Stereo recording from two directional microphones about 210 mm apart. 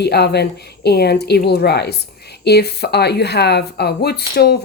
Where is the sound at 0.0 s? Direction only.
50° left (ahead or behind).